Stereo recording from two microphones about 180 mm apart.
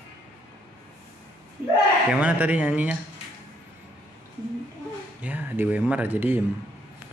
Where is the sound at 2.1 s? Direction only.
10° right (ahead or behind).